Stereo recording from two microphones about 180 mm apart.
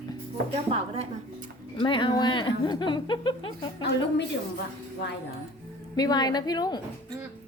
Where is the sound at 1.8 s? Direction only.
25° left (ahead or behind).